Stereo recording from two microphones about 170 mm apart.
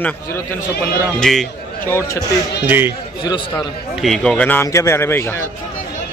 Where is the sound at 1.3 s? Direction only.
Centre (ahead or behind).